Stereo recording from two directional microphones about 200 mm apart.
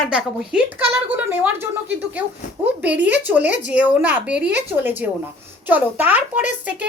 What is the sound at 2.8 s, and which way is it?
A woman's voice, 5° right (ahead or behind).